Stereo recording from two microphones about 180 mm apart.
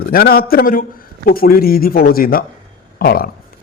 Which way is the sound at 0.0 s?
55° left (ahead or behind).